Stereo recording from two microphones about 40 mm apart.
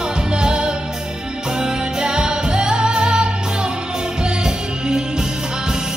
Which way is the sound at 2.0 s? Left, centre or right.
Right.